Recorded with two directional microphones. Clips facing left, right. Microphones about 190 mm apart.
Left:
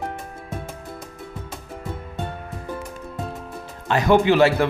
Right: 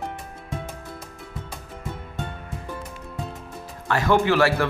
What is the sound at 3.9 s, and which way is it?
Speech, 20° left (ahead or behind).